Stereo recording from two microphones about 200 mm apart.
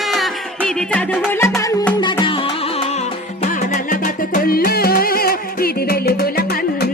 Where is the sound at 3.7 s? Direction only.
40° left (ahead or behind).